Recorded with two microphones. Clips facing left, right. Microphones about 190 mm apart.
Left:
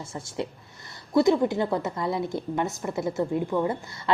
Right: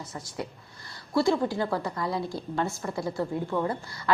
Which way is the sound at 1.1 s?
20° left (ahead or behind).